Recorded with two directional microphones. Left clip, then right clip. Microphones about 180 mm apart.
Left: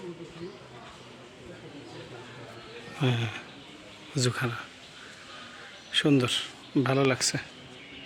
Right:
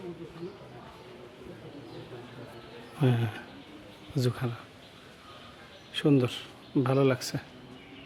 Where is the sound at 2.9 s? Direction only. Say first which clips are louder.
Even; 25° right (ahead or behind).